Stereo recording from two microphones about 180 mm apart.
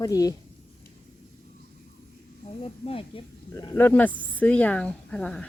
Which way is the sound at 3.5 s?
10° left (ahead or behind).